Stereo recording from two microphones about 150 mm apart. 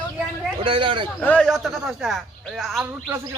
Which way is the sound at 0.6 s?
35° right (ahead or behind).